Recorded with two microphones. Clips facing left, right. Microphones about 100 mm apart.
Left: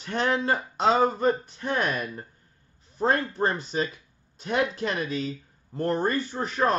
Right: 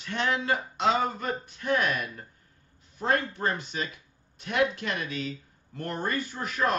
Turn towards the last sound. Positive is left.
turn(degrees=30)  # may be behind; listen again after turning